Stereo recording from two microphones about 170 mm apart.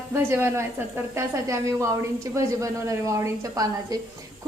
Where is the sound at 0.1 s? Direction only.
15° right (ahead or behind).